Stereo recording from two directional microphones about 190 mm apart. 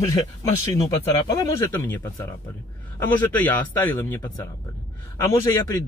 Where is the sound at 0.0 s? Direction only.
15° left (ahead or behind).